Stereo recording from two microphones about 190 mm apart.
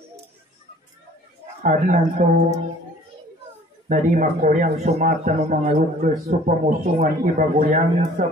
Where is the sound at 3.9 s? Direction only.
45° right (ahead or behind).